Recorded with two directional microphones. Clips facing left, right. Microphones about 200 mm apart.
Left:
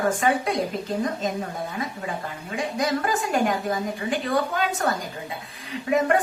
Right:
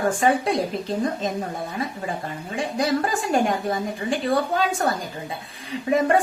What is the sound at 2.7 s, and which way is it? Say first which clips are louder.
A woman's voice: right 2 dB; 30° right (ahead or behind).